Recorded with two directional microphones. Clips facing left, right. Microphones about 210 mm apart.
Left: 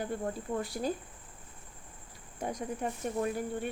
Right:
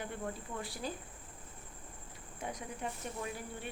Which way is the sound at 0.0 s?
40° left (ahead or behind).